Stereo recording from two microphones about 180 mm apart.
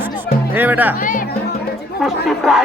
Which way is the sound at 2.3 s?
Centre (ahead or behind).